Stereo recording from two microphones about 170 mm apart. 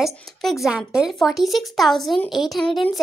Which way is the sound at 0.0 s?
Centre (ahead or behind).